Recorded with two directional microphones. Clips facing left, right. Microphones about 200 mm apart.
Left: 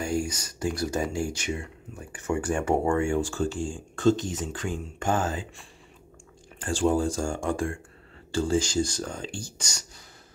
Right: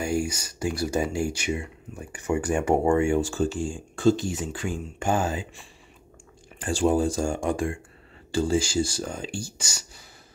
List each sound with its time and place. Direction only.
0.0 s speech: 10° right (ahead or behind)